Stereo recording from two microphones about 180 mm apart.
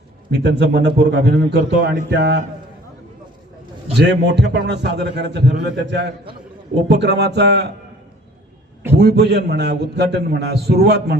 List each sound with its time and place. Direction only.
0.3 s a man's voice: 70° right (ahead or behind)
3.9 s a man's voice: 70° right (ahead or behind)
8.9 s a man's voice: 70° right (ahead or behind)